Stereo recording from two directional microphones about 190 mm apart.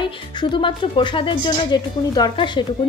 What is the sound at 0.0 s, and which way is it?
Speech, 25° left (ahead or behind).